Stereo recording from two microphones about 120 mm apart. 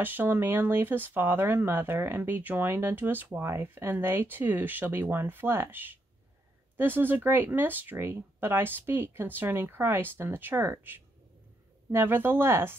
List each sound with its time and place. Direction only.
0.0 s speech: 15° right (ahead or behind)